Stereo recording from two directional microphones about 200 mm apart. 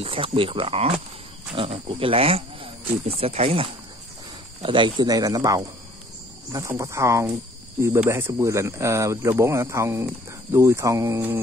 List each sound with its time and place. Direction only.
0.0 s speech: 25° right (ahead or behind)
4.6 s speech: 25° right (ahead or behind)